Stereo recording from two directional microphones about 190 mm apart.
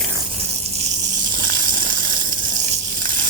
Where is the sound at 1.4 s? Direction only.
45° right (ahead or behind).